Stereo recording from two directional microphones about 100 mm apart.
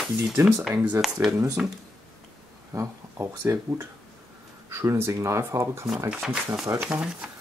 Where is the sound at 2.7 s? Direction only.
30° right (ahead or behind).